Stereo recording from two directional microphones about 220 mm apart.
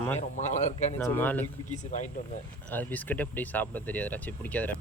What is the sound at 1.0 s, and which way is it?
Speech, 10° left (ahead or behind).